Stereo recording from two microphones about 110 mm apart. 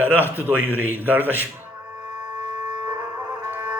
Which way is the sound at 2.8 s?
40° right (ahead or behind).